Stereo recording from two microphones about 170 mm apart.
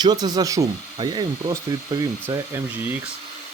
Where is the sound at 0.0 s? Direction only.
25° right (ahead or behind).